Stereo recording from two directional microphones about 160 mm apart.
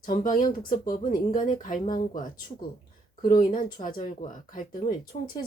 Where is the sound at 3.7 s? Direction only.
55° left (ahead or behind).